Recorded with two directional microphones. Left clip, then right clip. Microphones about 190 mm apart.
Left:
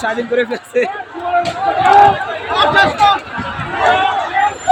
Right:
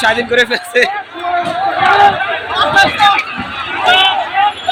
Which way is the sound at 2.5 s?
45° right (ahead or behind).